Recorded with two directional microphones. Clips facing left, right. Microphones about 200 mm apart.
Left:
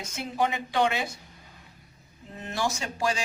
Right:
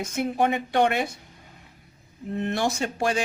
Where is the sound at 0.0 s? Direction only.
60° right (ahead or behind).